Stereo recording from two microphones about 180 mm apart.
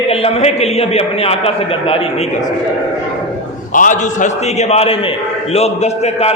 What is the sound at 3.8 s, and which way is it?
Speech, 45° left (ahead or behind).